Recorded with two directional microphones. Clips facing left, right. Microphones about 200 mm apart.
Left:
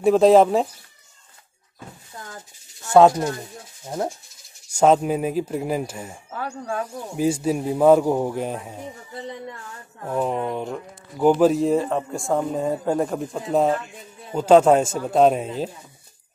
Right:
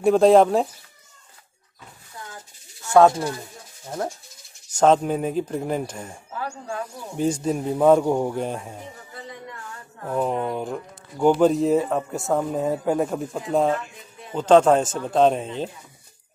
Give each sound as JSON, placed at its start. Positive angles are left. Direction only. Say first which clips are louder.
{"t": 0.0, "sound": "speech", "louder": "left 1 dB", "side_deg": 0}
{"t": 2.8, "sound": "snake", "louder": "left 1 dB", "side_deg": 15}
{"t": 4.7, "sound": "speech", "louder": "left 1 dB", "side_deg": 5}
{"t": 7.2, "sound": "speech", "louder": "left 1 dB", "side_deg": 5}
{"t": 10.1, "sound": "speech", "louder": "even", "side_deg": 0}